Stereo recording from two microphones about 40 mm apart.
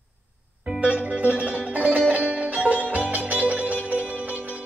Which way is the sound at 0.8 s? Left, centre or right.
Right.